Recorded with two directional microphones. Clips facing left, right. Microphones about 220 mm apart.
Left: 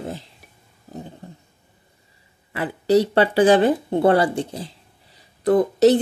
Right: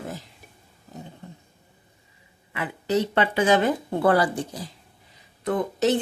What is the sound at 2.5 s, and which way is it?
Speech, 35° left (ahead or behind).